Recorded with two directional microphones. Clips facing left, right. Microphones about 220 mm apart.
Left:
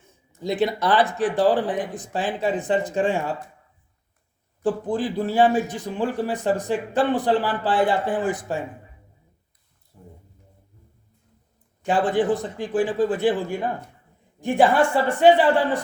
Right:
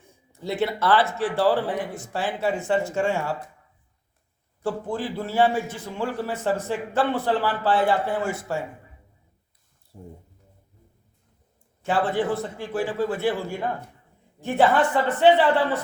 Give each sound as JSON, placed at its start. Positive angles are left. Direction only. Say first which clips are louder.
{"t": 0.4, "sound": "speech", "louder": "left 2 dB", "side_deg": 15}
{"t": 4.6, "sound": "speech", "louder": "left 4 dB", "side_deg": 15}
{"t": 9.9, "sound": "a sound", "louder": "right 5 dB", "side_deg": -30}
{"t": 11.8, "sound": "speech", "louder": "left 3 dB", "side_deg": 15}